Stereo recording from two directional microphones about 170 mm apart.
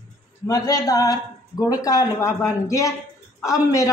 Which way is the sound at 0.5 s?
20° left (ahead or behind).